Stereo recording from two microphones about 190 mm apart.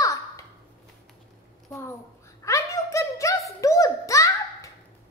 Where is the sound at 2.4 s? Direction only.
15° left (ahead or behind).